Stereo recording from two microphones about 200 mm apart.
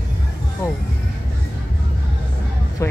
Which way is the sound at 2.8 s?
15° left (ahead or behind).